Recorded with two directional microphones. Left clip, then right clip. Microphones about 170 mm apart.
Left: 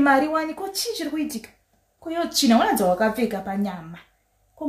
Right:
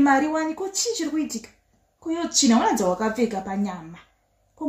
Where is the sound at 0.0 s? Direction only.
20° left (ahead or behind).